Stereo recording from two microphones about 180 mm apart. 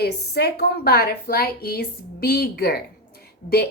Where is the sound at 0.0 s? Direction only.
60° left (ahead or behind).